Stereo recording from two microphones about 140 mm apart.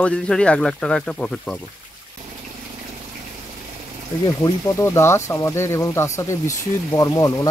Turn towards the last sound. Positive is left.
turn(degrees=25)  # may be behind; listen again after turning